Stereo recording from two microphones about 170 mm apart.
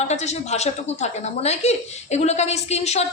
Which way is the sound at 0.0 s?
40° left (ahead or behind).